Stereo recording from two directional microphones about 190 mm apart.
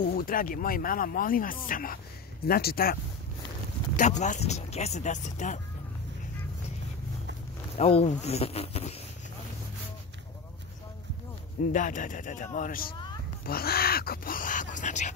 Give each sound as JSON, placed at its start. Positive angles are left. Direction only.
{"t": 0.0, "sound": "speech", "side_deg": 50}
{"t": 4.2, "sound": "speech", "side_deg": 35}
{"t": 7.7, "sound": "speech", "side_deg": 35}
{"t": 11.6, "sound": "speech", "side_deg": 45}